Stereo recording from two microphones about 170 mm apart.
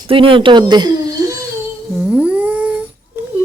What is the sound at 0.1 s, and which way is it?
Speech, 30° right (ahead or behind).